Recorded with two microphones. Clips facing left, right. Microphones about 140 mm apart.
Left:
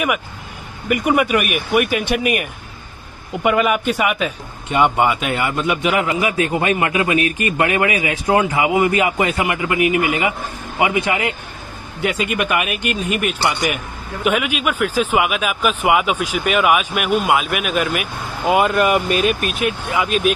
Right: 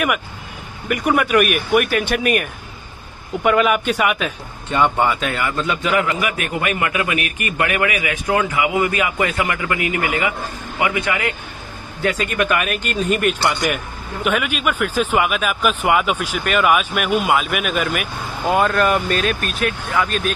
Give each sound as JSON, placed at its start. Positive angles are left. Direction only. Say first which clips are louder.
{"t": 0.8, "sound": "speech", "louder": "left 2 dB", "side_deg": 5}
{"t": 3.4, "sound": "speech", "louder": "even", "side_deg": 0}
{"t": 4.7, "sound": "a man's voice", "louder": "left 2 dB", "side_deg": 15}